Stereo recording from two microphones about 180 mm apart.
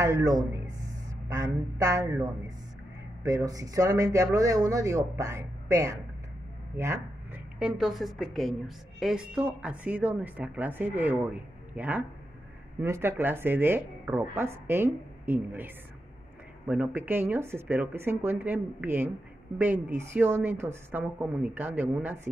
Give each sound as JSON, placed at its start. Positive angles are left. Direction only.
{"t": 0.0, "sound": "a woman's voice", "side_deg": -20}
{"t": 7.5, "sound": "a woman's voice", "side_deg": -5}